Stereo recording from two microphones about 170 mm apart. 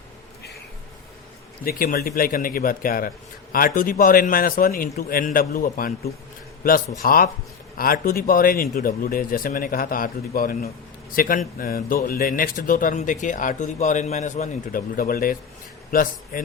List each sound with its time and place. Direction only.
1.6 s speech: 60° left (ahead or behind)
7.0 s speech: 60° left (ahead or behind)